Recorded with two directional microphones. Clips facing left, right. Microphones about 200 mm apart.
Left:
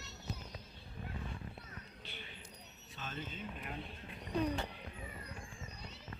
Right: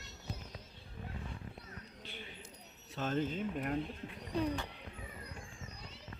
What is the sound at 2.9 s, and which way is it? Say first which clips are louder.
Speech: right 11 dB; 65° right (ahead or behind).